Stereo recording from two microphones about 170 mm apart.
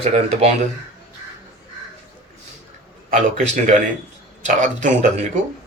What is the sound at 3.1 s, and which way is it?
Speech, 45° right (ahead or behind).